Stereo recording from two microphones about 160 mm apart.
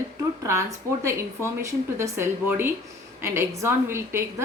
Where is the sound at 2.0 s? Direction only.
15° right (ahead or behind).